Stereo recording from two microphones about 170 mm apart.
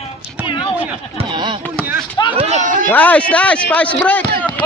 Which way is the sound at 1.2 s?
25° right (ahead or behind).